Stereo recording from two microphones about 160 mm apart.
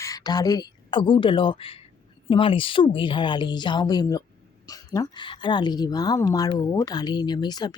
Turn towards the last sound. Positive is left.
turn(degrees=25)  # may be behind; listen again after turning